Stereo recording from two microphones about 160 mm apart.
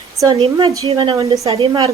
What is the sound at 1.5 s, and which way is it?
Speech, 35° right (ahead or behind).